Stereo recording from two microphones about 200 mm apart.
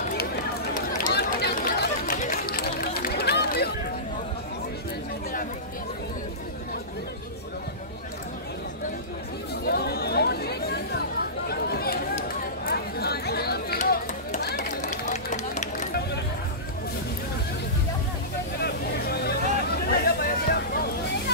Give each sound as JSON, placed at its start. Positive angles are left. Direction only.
{"t": 0.7, "sound": "chatter", "side_deg": 45}
{"t": 9.7, "sound": "chatter", "side_deg": 50}
{"t": 13.7, "sound": "chop", "side_deg": 40}
{"t": 14.6, "sound": "run", "side_deg": 35}
{"t": 18.6, "sound": "vehicle", "side_deg": 50}
{"t": 19.9, "sound": "a sound", "side_deg": 50}